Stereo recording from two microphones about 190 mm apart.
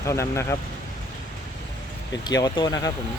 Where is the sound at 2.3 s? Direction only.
20° left (ahead or behind).